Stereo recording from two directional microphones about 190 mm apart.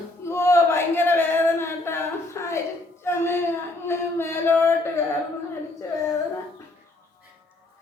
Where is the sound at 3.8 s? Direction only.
10° left (ahead or behind).